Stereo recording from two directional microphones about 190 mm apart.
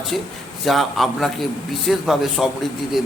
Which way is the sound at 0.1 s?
Centre (ahead or behind).